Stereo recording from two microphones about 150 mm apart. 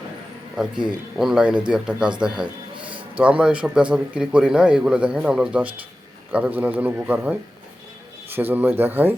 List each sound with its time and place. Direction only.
0.5 s speech: 5° right (ahead or behind)
2.7 s a sound: 35° right (ahead or behind)
3.2 s a man's voice: 10° right (ahead or behind)